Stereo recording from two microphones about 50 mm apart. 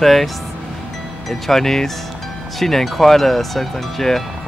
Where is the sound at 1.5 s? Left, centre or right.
Centre.